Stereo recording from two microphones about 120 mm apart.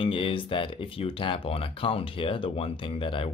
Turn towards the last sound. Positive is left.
turn(degrees=50)  # may be behind; listen again after turning